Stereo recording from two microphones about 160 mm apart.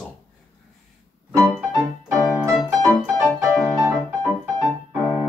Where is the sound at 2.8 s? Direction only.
20° right (ahead or behind).